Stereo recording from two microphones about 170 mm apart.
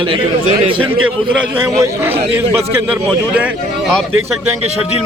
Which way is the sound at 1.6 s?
15° right (ahead or behind).